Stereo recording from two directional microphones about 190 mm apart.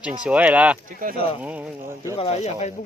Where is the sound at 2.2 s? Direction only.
35° left (ahead or behind).